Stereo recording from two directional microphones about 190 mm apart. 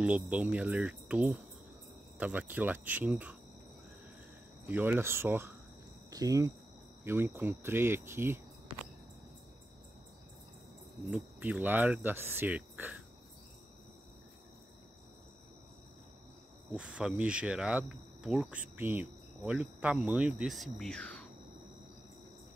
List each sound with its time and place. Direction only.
0.0 s speech: 5° right (ahead or behind)
4.6 s speech: 10° right (ahead or behind)
11.1 s speech: 10° right (ahead or behind)
16.7 s speech: 5° right (ahead or behind)